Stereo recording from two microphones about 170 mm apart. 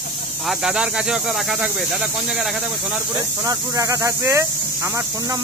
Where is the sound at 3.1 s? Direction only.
20° right (ahead or behind).